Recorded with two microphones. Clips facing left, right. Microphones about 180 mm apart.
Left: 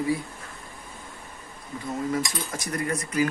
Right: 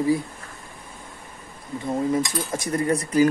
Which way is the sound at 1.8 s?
25° right (ahead or behind).